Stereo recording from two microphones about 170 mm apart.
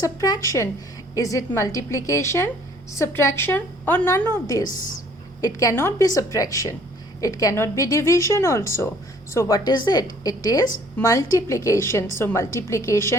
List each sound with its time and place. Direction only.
0.0 s a woman's voice: 20° left (ahead or behind)
4.6 s a woman's voice: 50° left (ahead or behind)
5.4 s a woman's voice: 20° left (ahead or behind)